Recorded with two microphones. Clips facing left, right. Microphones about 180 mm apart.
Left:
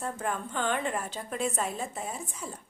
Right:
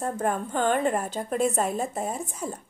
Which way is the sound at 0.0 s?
45° right (ahead or behind).